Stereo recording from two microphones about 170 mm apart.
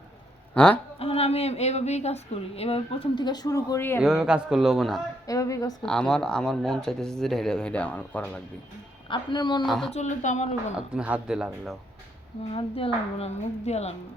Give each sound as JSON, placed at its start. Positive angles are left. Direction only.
{"t": 0.5, "sound": "speech", "side_deg": 5}
{"t": 0.9, "sound": "a woman's voice", "side_deg": 35}
{"t": 4.0, "sound": "speech", "side_deg": -5}
{"t": 5.2, "sound": "speech", "side_deg": 20}
{"t": 5.8, "sound": "speech", "side_deg": 5}
{"t": 9.0, "sound": "speech", "side_deg": 25}
{"t": 9.6, "sound": "speech", "side_deg": 0}
{"t": 9.9, "sound": "speech", "side_deg": 45}
{"t": 10.8, "sound": "speech", "side_deg": -5}
{"t": 12.5, "sound": "a woman's voice", "side_deg": 35}